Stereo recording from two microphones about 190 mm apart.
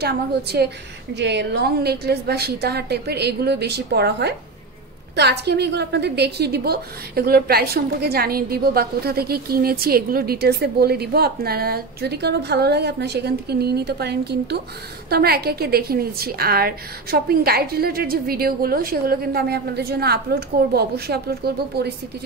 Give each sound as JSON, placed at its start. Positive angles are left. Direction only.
{"t": 0.0, "sound": "a woman's voice", "side_deg": -60}